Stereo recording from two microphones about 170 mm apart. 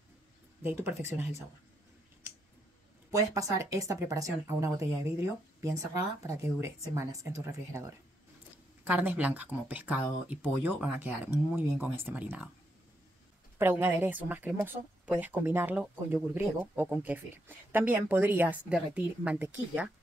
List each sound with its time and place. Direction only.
0.7 s speech: 15° right (ahead or behind)
3.1 s speech: 20° right (ahead or behind)
8.8 s speech: 10° right (ahead or behind)
13.6 s speech: 10° right (ahead or behind)